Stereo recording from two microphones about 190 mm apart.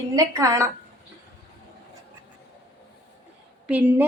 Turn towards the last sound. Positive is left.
turn(degrees=-10)  # may be behind; listen again after turning